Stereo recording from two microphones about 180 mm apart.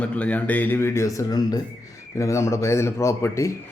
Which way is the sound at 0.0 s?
5° left (ahead or behind).